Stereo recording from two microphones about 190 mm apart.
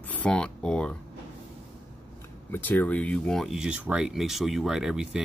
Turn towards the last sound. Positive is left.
turn(degrees=-5)  # may be behind; listen again after turning